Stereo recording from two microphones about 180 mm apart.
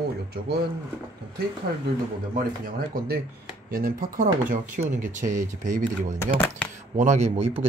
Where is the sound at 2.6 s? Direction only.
55° right (ahead or behind).